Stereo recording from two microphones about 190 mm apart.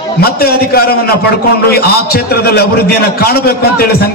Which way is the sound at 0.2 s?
55° left (ahead or behind).